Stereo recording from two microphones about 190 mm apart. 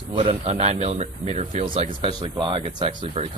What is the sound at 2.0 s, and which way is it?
Speech, 20° right (ahead or behind).